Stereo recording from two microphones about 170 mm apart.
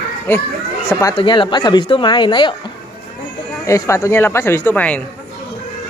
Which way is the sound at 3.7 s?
15° left (ahead or behind).